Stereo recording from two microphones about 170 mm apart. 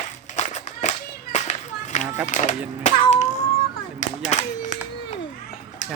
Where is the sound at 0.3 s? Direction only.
45° left (ahead or behind).